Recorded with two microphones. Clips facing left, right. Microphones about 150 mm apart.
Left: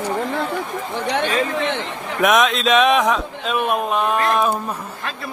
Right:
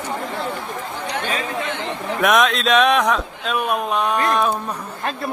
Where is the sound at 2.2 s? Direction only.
Centre (ahead or behind).